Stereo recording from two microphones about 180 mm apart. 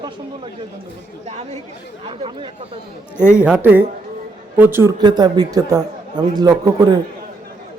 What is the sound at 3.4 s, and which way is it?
A man's voice, 10° right (ahead or behind).